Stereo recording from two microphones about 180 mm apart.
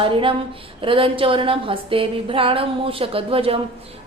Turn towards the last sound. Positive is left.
turn(degrees=-30)  # may be behind; listen again after turning